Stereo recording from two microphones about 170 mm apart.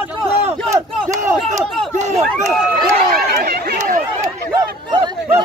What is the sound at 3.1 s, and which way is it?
Speech, 65° right (ahead or behind).